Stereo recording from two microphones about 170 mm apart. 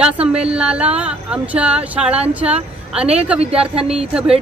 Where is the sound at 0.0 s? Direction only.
5° right (ahead or behind).